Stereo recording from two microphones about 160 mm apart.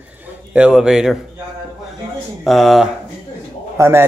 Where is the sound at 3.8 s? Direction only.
15° right (ahead or behind).